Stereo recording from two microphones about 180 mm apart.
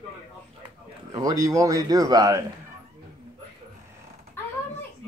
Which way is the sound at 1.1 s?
20° right (ahead or behind).